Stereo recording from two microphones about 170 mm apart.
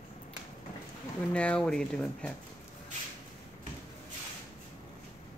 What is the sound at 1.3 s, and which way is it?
Speech, 5° left (ahead or behind).